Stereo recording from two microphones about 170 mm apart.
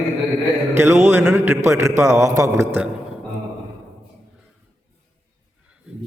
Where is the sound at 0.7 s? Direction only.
15° right (ahead or behind).